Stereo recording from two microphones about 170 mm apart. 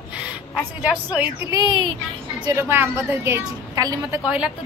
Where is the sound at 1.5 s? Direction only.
25° right (ahead or behind).